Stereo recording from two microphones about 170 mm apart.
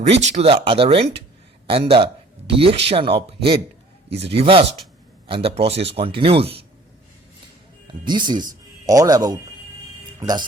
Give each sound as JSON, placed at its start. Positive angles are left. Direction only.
{"t": 0.3, "sound": "speech", "side_deg": -35}
{"t": 8.0, "sound": "speech", "side_deg": -25}